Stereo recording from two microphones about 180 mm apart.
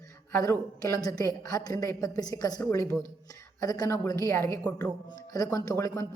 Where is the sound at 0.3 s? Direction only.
15° left (ahead or behind).